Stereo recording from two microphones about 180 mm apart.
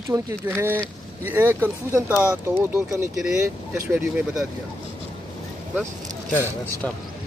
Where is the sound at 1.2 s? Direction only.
10° right (ahead or behind).